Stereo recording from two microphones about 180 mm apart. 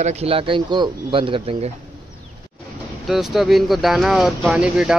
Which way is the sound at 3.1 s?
Centre (ahead or behind).